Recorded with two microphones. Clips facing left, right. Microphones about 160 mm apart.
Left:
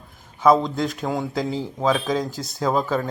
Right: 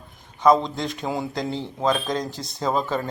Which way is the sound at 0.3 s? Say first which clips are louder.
Left 1 dB; 5° left (ahead or behind).